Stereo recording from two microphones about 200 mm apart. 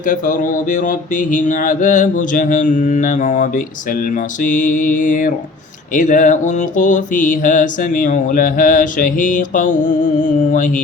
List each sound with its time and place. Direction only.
0.0 s mantra: 40° left (ahead or behind)